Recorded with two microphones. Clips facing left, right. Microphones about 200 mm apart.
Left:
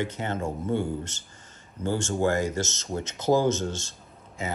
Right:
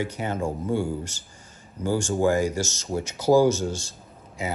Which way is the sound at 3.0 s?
20° left (ahead or behind).